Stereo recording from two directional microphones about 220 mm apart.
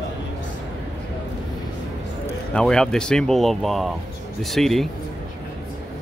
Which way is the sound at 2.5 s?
5° left (ahead or behind).